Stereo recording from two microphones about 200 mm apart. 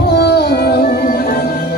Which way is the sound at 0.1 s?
55° left (ahead or behind).